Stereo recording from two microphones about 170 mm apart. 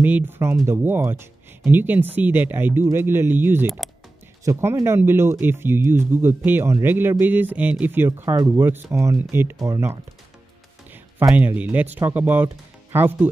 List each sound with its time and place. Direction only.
0.0 s speech: 10° right (ahead or behind)
3.6 s speech: centre (ahead or behind)
4.5 s speech: 15° right (ahead or behind)
11.2 s speech: 10° right (ahead or behind)